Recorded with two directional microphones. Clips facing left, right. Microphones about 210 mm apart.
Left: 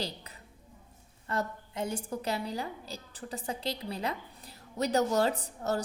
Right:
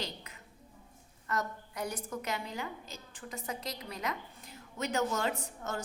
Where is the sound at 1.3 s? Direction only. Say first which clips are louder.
Left 2 dB; 25° left (ahead or behind).